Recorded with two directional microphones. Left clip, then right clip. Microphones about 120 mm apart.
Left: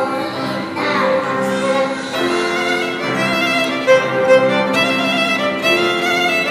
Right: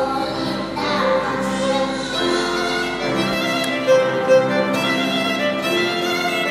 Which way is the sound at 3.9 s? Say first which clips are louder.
Left 3 dB; 15° left (ahead or behind).